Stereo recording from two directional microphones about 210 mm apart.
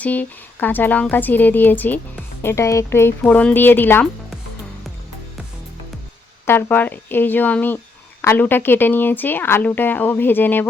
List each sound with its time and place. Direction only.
0.0 s speech: 5° left (ahead or behind)
6.4 s speech: 10° left (ahead or behind)